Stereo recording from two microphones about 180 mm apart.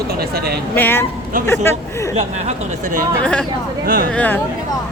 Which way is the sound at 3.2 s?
5° left (ahead or behind).